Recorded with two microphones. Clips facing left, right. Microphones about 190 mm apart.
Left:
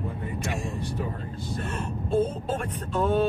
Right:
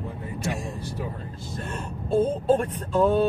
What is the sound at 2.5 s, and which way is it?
Speech, 35° right (ahead or behind).